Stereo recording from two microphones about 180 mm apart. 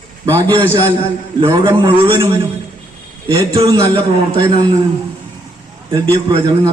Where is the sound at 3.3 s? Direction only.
30° right (ahead or behind).